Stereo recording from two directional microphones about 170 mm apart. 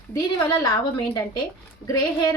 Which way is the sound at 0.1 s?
20° left (ahead or behind).